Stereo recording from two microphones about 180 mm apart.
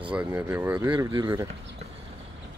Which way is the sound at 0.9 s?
25° right (ahead or behind).